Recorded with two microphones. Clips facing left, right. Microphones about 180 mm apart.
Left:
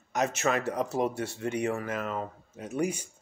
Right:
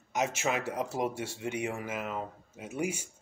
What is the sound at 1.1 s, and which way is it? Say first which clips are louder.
Speech: left 3 dB; 65° left (ahead or behind).